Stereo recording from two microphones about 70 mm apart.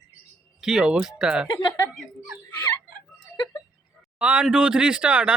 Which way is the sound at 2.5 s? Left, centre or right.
Left.